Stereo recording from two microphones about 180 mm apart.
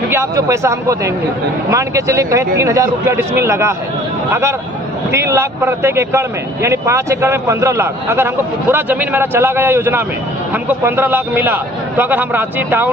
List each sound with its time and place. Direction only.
0.1 s speech: 15° right (ahead or behind)